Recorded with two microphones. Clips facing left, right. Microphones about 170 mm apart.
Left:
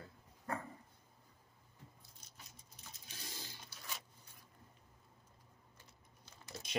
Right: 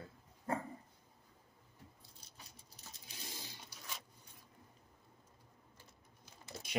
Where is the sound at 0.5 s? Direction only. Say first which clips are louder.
Right 4 dB; 25° right (ahead or behind).